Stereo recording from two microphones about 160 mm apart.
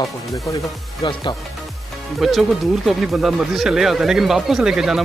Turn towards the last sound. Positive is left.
turn(degrees=-5)  # may be behind; listen again after turning